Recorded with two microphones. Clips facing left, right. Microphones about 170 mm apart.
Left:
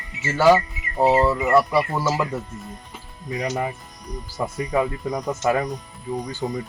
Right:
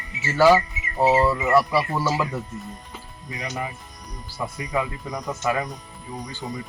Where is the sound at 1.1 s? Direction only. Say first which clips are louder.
Left 1 dB; 20° left (ahead or behind).